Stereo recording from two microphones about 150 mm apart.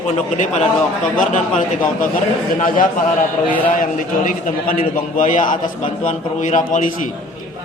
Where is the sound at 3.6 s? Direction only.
65° left (ahead or behind).